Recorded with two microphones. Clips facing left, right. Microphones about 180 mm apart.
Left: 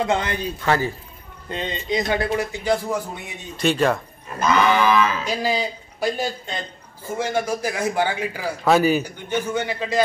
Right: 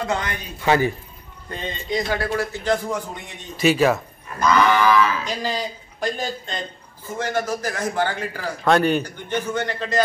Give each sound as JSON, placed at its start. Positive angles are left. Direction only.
{"t": 0.0, "sound": "a man's voice", "side_deg": 25}
{"t": 0.6, "sound": "a man's voice", "side_deg": -15}
{"t": 1.5, "sound": "a man's voice", "side_deg": 20}
{"t": 3.5, "sound": "speech", "side_deg": -5}
{"t": 4.4, "sound": "a man's voice", "side_deg": 20}
{"t": 5.2, "sound": "a man's voice", "side_deg": 10}